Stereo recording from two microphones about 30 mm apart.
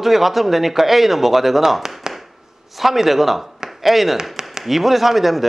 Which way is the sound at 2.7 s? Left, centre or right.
Centre.